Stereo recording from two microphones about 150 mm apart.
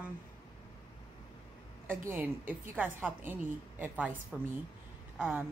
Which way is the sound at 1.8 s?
15° right (ahead or behind).